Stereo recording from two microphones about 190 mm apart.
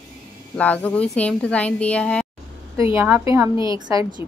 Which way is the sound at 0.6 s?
5° left (ahead or behind).